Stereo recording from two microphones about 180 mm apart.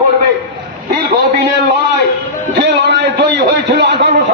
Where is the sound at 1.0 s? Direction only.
60° right (ahead or behind).